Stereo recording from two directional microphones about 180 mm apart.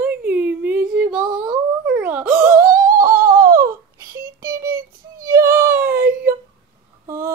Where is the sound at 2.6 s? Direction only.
50° right (ahead or behind).